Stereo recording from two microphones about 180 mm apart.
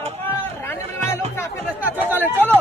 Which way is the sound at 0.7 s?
15° left (ahead or behind).